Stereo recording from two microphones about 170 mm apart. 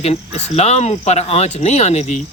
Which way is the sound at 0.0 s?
40° left (ahead or behind).